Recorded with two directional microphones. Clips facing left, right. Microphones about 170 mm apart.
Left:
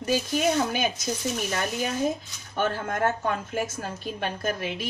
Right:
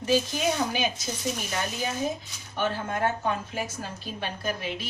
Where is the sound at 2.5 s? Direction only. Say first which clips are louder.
Left 2 dB; 50° left (ahead or behind).